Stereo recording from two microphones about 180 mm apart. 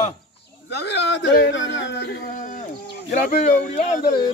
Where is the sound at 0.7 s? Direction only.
70° left (ahead or behind).